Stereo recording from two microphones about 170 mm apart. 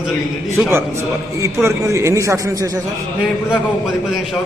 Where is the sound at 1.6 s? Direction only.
15° right (ahead or behind).